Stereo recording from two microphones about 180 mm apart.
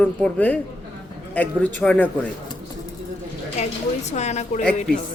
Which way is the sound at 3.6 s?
35° left (ahead or behind).